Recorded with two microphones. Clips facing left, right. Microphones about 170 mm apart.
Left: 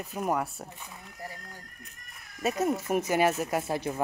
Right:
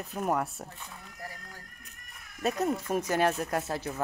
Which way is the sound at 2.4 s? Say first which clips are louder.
Left 1 dB; centre (ahead or behind).